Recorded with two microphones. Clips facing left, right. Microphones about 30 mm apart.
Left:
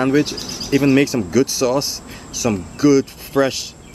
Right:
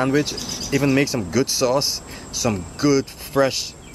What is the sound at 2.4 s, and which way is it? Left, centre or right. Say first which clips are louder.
Speech: left 3 dB; centre.